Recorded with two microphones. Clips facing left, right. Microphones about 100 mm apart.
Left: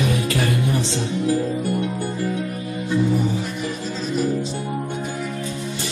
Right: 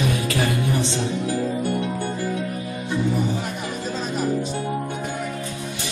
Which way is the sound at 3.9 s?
50° right (ahead or behind).